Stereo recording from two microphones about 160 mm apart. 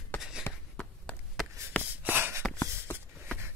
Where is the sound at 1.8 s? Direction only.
10° right (ahead or behind).